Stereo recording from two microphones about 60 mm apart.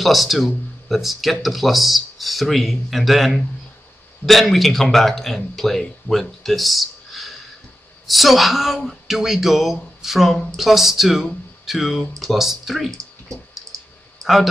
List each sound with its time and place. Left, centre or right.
0.0 s speech: centre
14.2 s speech: centre